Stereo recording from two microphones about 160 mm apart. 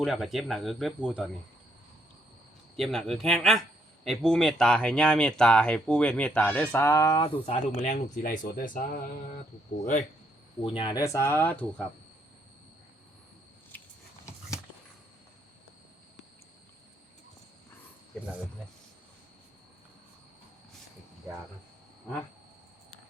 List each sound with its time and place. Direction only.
0.0 s speech: centre (ahead or behind)
2.7 s speech: centre (ahead or behind); by 7.3 s 25° left (ahead or behind)
7.4 s speech: 45° left (ahead or behind); by 9.0 s 60° left (ahead or behind)
10.6 s speech: 30° left (ahead or behind); by 11.9 s 10° left (ahead or behind)
21.2 s speech: 20° right (ahead or behind)